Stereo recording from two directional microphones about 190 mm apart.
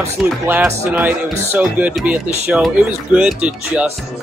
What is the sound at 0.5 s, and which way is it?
A man's voice, 10° right (ahead or behind).